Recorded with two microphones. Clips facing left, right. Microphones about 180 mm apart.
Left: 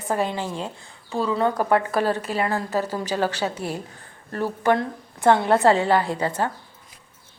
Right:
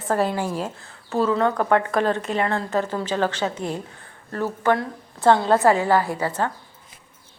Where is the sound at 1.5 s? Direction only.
10° left (ahead or behind).